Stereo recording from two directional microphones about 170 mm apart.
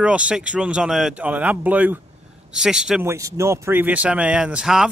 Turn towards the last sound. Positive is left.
turn(degrees=-5)  # may be behind; listen again after turning